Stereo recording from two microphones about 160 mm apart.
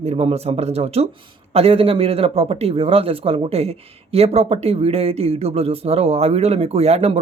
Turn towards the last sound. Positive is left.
turn(degrees=-40)  # may be behind; listen again after turning